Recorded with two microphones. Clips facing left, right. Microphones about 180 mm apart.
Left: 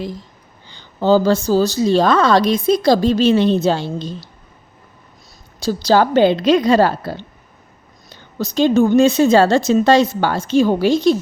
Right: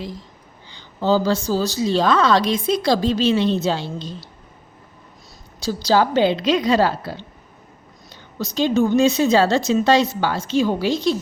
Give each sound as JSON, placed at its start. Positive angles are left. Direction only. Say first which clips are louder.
{"t": 0.7, "sound": "a woman's voice", "louder": "left 5 dB", "side_deg": 55}
{"t": 5.6, "sound": "a woman's voice", "louder": "left 3 dB", "side_deg": 55}
{"t": 8.4, "sound": "a woman's voice", "louder": "left 4 dB", "side_deg": 55}